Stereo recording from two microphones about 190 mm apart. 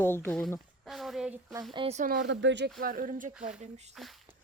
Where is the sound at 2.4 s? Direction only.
70° right (ahead or behind).